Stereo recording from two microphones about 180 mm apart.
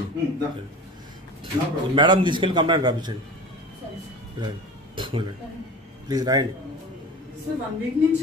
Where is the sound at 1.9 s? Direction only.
25° right (ahead or behind).